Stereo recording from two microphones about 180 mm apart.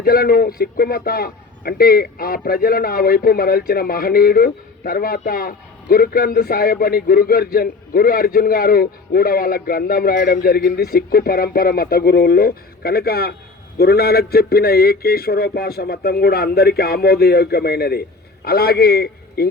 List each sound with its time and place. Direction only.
0.0 s a man's voice: 55° left (ahead or behind)